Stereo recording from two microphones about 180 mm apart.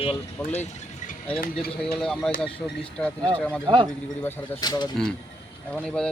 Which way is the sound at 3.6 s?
25° right (ahead or behind).